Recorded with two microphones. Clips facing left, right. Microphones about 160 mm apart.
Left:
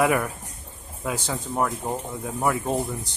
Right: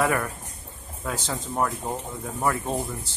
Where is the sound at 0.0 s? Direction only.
10° left (ahead or behind).